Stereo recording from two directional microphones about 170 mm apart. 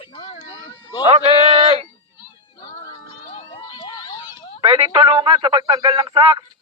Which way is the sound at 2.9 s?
30° left (ahead or behind).